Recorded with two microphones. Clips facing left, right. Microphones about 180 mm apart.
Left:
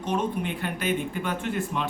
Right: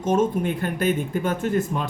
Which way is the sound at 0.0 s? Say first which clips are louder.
Right 6 dB; 45° right (ahead or behind).